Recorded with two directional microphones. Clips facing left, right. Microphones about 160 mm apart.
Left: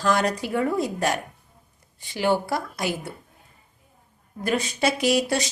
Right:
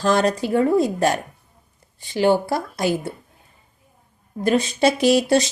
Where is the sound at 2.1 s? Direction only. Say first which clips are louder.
Right 5 dB; 30° right (ahead or behind).